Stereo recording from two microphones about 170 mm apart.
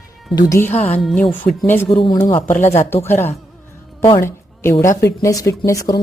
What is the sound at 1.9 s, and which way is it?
Speech, 30° left (ahead or behind).